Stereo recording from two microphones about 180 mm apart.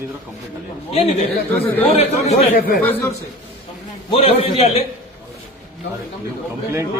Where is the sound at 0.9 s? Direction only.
30° left (ahead or behind).